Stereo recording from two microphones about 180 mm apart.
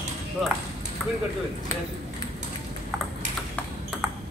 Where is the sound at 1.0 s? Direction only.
5° left (ahead or behind).